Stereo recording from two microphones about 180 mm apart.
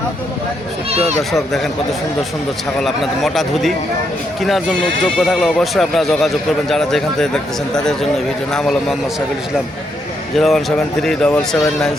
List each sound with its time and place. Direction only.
0.9 s speech: 35° right (ahead or behind)
1.5 s speech: centre (ahead or behind)
10.3 s speech: centre (ahead or behind)